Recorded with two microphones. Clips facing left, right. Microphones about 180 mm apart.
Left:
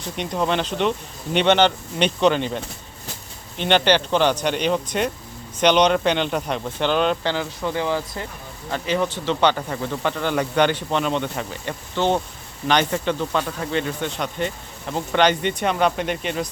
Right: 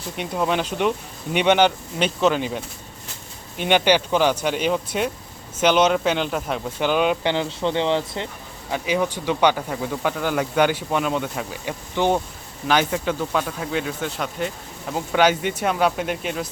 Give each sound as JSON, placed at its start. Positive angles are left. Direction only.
{"t": 0.2, "sound": "speech", "side_deg": -5}
{"t": 3.6, "sound": "speech", "side_deg": -10}
{"t": 7.3, "sound": "speech", "side_deg": -25}
{"t": 8.7, "sound": "speech", "side_deg": -10}